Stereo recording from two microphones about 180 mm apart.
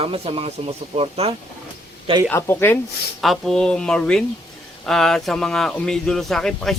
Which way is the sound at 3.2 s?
Centre (ahead or behind).